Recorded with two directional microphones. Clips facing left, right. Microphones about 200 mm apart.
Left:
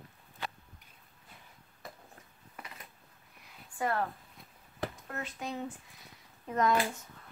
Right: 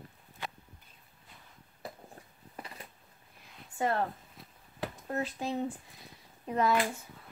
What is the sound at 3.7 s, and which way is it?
Speech, 25° right (ahead or behind).